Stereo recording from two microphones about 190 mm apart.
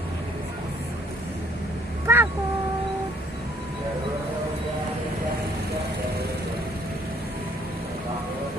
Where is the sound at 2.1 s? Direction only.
15° right (ahead or behind).